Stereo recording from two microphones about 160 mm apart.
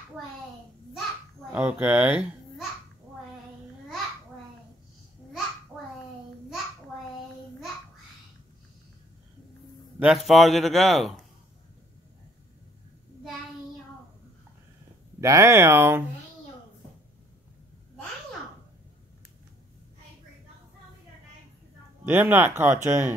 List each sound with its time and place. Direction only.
1.5 s speech: 10° right (ahead or behind)
9.9 s a man's voice: 5° right (ahead or behind)
15.1 s speech: 20° right (ahead or behind)
22.0 s speech: 10° right (ahead or behind)